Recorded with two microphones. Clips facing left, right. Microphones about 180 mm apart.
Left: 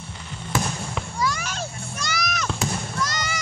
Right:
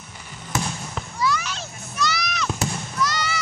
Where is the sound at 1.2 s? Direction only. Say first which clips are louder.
Right 3 dB; 45° left (ahead or behind).